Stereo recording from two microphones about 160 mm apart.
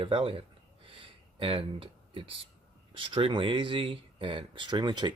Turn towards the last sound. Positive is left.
turn(degrees=-25)  # may be behind; listen again after turning